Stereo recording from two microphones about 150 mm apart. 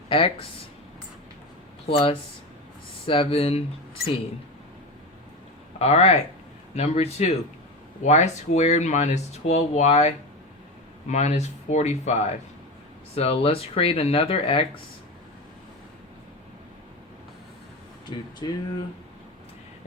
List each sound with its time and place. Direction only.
0.1 s speech: 40° left (ahead or behind)
1.9 s speech: 40° left (ahead or behind)
5.8 s speech: 45° left (ahead or behind)
18.1 s speech: 30° left (ahead or behind)